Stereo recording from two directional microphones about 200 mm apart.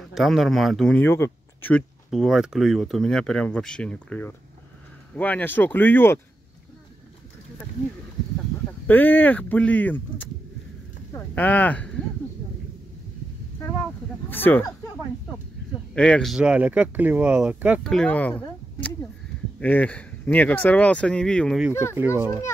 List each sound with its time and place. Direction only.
0.1 s speech: centre (ahead or behind)
8.8 s speech: 10° left (ahead or behind)
11.1 s speech: 10° left (ahead or behind)
14.3 s speech: 10° left (ahead or behind)
15.9 s speech: 5° left (ahead or behind)
17.8 s speech: 5° left (ahead or behind)
19.6 s speech: 5° left (ahead or behind)
21.9 s speech: 10° right (ahead or behind)